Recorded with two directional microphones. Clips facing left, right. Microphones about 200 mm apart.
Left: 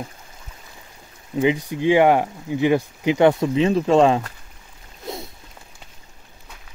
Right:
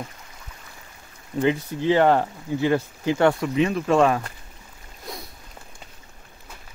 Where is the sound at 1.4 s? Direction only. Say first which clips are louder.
Left 3 dB; 15° left (ahead or behind).